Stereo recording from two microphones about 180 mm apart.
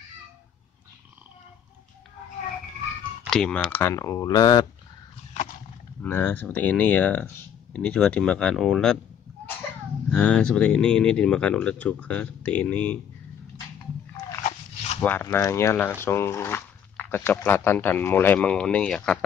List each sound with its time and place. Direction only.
3.3 s speech: 5° left (ahead or behind); by 4.6 s 25° left (ahead or behind)
6.0 s speech: 10° left (ahead or behind)
10.1 s speech: 5° left (ahead or behind)
14.4 s dog: 35° left (ahead or behind)
15.0 s speech: 10° left (ahead or behind)